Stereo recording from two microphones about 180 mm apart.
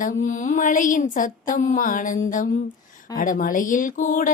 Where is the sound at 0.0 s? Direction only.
45° left (ahead or behind).